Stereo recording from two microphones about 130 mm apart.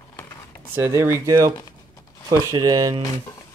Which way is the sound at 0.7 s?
20° right (ahead or behind).